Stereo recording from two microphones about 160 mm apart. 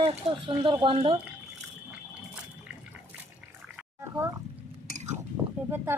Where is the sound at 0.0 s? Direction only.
30° right (ahead or behind).